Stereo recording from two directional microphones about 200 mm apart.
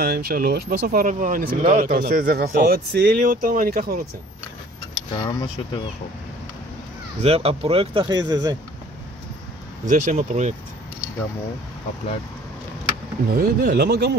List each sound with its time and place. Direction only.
0.0 s speech: 50° right (ahead or behind)
5.1 s speech: 20° left (ahead or behind)
7.2 s speech: 30° right (ahead or behind)
9.8 s speech: 35° right (ahead or behind)
13.3 s speech: 45° right (ahead or behind)